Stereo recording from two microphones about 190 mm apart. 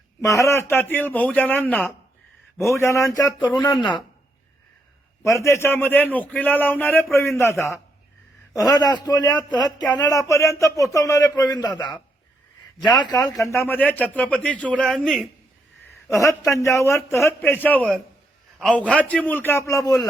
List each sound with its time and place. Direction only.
0.2 s a man's voice: 15° left (ahead or behind)
5.2 s a man's voice: 15° left (ahead or behind)
13.4 s a man's voice: 15° left (ahead or behind)
16.0 s a man's voice: 15° left (ahead or behind)